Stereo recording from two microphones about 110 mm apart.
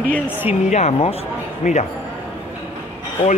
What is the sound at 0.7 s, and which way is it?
Speech, 80° left.